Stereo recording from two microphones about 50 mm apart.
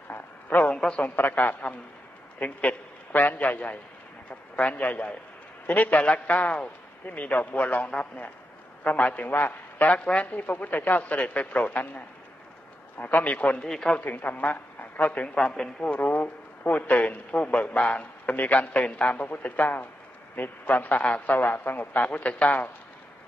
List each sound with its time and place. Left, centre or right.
0.1 s a sound: left
0.7 s a woman's voice: centre
1.0 s a man's voice: left
13.0 s a man's voice: left
13.6 s speech: centre
14.0 s a man's voice: left
15.3 s a man's voice: centre
16.0 s a man's voice: left